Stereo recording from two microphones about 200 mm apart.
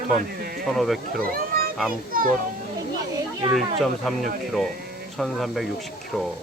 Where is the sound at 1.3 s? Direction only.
45° right (ahead or behind).